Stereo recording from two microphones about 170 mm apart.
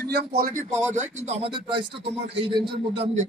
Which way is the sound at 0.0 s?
60° right (ahead or behind).